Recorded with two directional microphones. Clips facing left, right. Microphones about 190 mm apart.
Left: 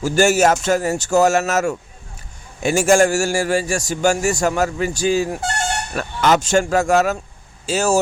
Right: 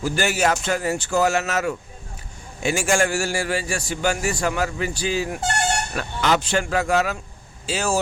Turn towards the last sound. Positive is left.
turn(degrees=45)  # may be behind; listen again after turning